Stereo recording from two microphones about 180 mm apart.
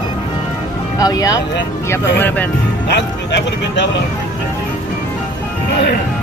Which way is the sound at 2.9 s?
70° left (ahead or behind).